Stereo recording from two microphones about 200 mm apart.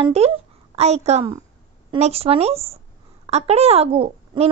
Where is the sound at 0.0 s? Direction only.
30° right (ahead or behind).